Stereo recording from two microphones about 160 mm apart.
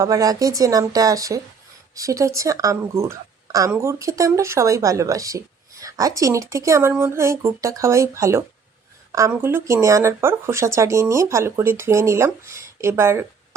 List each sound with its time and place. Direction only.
0.0 s a woman's voice: 20° right (ahead or behind)